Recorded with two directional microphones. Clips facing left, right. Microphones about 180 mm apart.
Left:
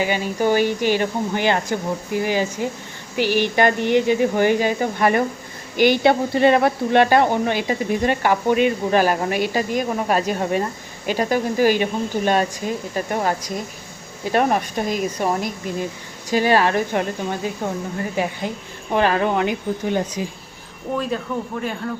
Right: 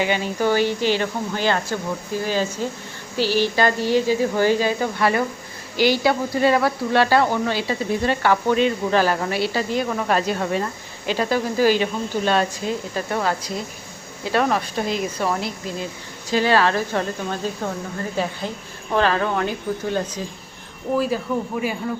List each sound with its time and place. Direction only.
0.1 s speech: 15° left (ahead or behind)
14.3 s speech: 15° left (ahead or behind)
20.9 s a man's voice: 5° right (ahead or behind)